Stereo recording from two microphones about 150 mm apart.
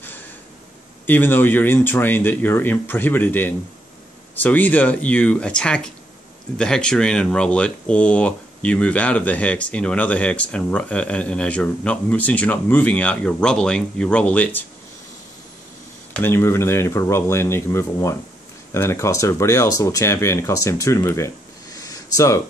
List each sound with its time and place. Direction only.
1.0 s speech: 10° left (ahead or behind)
16.1 s speech: 15° left (ahead or behind)
21.8 s a sound: 20° left (ahead or behind)